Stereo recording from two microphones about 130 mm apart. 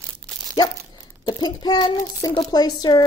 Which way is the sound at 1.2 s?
30° left (ahead or behind).